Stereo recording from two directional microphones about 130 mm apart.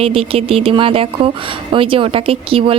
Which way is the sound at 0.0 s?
45° right (ahead or behind).